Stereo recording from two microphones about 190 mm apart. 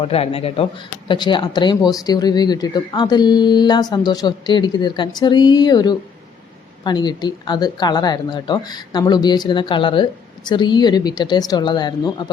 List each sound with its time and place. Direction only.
0.0 s speech: 30° left (ahead or behind)